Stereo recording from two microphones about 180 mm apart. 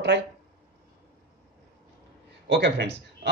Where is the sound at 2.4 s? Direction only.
75° right (ahead or behind).